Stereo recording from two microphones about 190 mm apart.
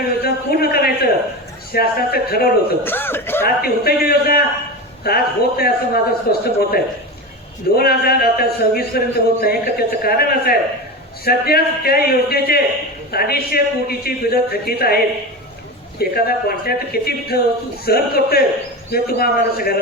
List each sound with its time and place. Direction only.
0.2 s a sound: 55° left (ahead or behind)
1.7 s speech: 55° left (ahead or behind)
2.8 s chuckle: 10° left (ahead or behind)
3.4 s speech: 55° left (ahead or behind)
16.0 s speech: 55° left (ahead or behind)